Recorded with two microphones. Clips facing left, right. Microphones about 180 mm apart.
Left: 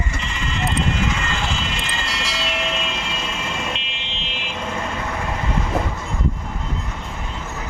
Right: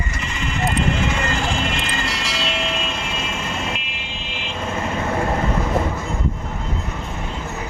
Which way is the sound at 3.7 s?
25° left (ahead or behind).